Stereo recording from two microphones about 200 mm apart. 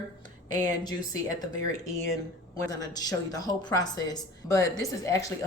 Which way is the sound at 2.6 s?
20° left (ahead or behind).